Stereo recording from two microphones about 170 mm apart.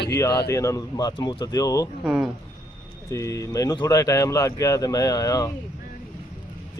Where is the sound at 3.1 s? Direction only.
20° left (ahead or behind).